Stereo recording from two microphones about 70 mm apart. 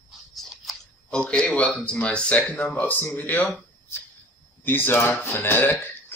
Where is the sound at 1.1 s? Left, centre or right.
Centre.